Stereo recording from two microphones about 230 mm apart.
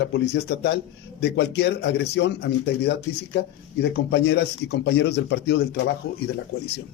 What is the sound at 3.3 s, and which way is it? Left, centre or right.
Speech, left.